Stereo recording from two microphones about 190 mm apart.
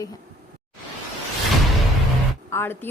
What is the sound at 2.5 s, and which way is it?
Speech, 10° left (ahead or behind).